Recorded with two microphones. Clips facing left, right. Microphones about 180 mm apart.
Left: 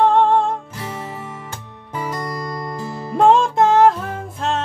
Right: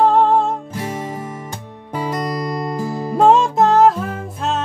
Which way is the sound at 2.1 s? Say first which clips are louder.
Right 5 dB; 20° right (ahead or behind).